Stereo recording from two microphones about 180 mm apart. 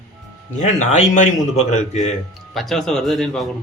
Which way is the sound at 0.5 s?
40° left (ahead or behind).